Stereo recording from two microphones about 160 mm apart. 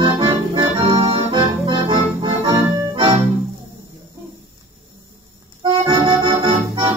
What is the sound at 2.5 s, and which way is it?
Music, 25° right (ahead or behind).